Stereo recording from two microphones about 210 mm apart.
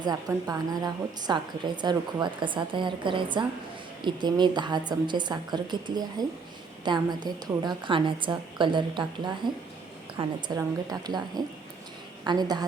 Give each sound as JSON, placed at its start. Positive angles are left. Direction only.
{"t": 0.0, "sound": "a woman's voice", "side_deg": -15}